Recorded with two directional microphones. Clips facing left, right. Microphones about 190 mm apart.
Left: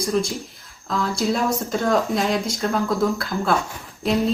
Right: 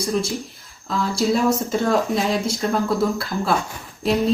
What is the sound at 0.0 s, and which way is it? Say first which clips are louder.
Speech: even; centre (ahead or behind).